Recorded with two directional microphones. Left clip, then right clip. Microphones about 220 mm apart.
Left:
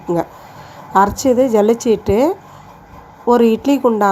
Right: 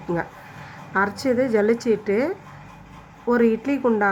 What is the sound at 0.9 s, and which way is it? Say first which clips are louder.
A woman's voice: left 9 dB; 10° left (ahead or behind).